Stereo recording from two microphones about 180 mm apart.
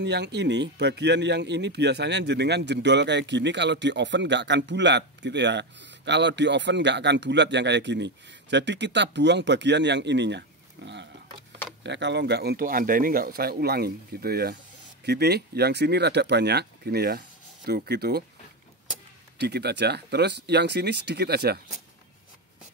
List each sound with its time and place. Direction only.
0.0 s speech: 70° right (ahead or behind)
10.8 s pig: 75° right (ahead or behind)
11.8 s speech: 75° right (ahead or behind)
19.3 s speech: 65° right (ahead or behind)